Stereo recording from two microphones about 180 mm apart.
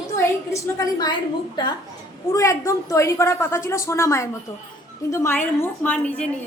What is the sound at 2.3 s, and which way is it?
A woman's voice, 15° left (ahead or behind).